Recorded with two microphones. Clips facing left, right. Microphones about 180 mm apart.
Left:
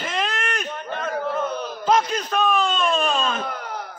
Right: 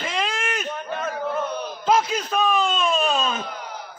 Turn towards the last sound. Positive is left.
turn(degrees=55)  # may be behind; listen again after turning